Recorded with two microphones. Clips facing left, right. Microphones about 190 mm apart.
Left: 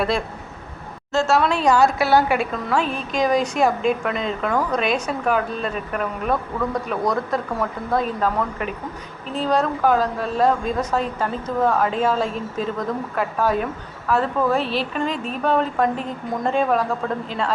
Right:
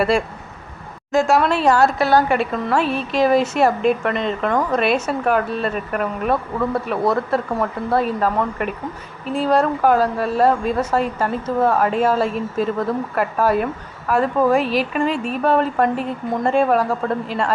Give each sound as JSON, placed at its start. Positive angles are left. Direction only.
{"t": 1.1, "sound": "a woman's voice", "side_deg": -15}
{"t": 1.4, "sound": "a woman's voice", "side_deg": -5}